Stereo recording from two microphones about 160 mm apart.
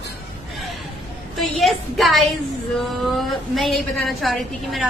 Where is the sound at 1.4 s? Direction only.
Centre (ahead or behind).